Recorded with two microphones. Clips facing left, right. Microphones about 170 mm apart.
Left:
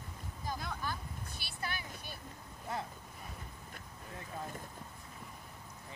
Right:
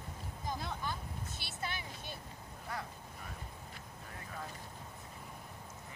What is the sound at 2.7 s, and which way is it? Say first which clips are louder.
Speech: left 3 dB; 25° left (ahead or behind).